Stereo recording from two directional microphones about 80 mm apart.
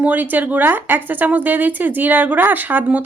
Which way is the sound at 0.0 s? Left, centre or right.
Right.